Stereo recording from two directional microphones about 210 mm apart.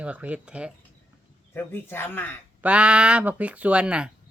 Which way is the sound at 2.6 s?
5° right (ahead or behind).